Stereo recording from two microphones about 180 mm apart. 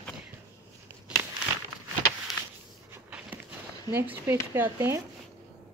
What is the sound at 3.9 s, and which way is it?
Speech, 10° right (ahead or behind).